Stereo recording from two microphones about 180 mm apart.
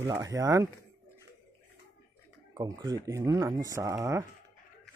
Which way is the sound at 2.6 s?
20° right (ahead or behind).